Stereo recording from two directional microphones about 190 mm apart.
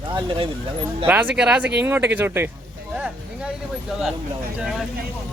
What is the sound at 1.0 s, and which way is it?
Speech, 10° right (ahead or behind).